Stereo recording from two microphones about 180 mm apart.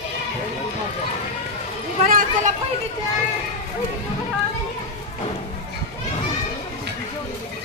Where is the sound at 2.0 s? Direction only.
45° right (ahead or behind).